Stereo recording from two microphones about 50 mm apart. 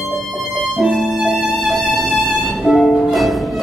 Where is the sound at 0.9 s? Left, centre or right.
Centre.